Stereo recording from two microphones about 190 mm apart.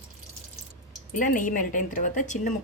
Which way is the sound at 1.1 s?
45° left (ahead or behind).